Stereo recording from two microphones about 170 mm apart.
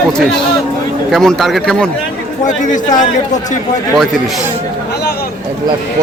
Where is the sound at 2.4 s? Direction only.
45° left (ahead or behind).